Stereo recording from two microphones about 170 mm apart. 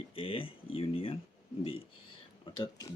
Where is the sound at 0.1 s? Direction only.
35° left (ahead or behind).